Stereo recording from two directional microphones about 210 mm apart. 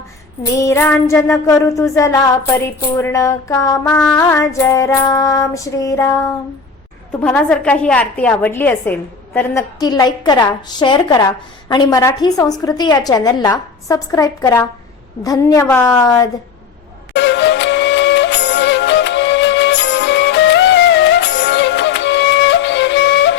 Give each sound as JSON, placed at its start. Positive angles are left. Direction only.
{"t": 0.5, "sound": "music", "side_deg": 15}
{"t": 9.8, "sound": "a woman's voice", "side_deg": 20}
{"t": 11.7, "sound": "music", "side_deg": 20}
{"t": 17.2, "sound": "music", "side_deg": 60}